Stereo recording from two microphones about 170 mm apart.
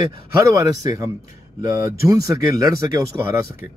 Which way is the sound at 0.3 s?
20° right (ahead or behind).